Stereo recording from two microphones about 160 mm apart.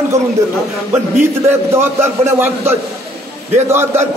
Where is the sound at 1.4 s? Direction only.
15° right (ahead or behind).